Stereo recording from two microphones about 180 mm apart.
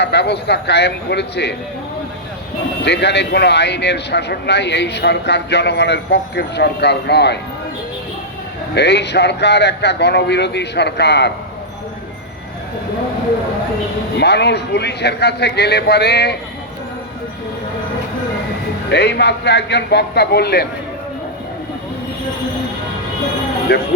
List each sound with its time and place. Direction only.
0.0 s speech: 70° left (ahead or behind)
2.8 s speech: 70° left (ahead or behind)
8.7 s speech: 70° left (ahead or behind)
14.2 s speech: 70° left (ahead or behind)
18.9 s speech: 65° left (ahead or behind)